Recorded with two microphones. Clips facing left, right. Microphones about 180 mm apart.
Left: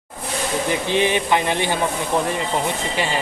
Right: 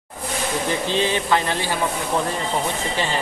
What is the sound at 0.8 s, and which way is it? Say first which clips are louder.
Speech: left 2 dB; 15° left (ahead or behind).